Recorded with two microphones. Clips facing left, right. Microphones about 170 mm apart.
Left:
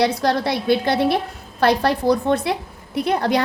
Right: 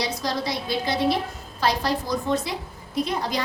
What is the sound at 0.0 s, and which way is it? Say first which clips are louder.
A woman's voice: left 8 dB; 65° left (ahead or behind).